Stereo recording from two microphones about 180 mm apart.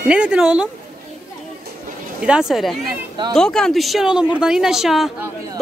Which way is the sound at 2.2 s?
5° right (ahead or behind).